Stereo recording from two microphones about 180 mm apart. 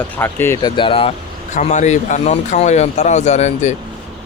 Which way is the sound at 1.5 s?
40° left (ahead or behind).